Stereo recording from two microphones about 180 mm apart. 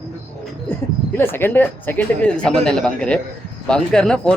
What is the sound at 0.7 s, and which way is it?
A man's voice, 10° left (ahead or behind).